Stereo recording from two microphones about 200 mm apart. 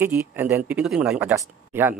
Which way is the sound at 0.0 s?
10° right (ahead or behind).